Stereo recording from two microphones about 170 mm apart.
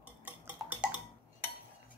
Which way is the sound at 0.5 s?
10° right (ahead or behind).